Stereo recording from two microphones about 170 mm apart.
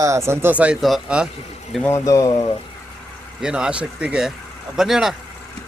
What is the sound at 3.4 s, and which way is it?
Speech, 5° right (ahead or behind).